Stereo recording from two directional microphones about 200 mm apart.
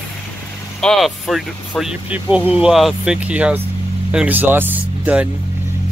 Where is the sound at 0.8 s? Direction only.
Centre (ahead or behind).